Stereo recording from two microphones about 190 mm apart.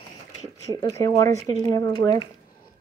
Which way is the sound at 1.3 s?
35° right (ahead or behind).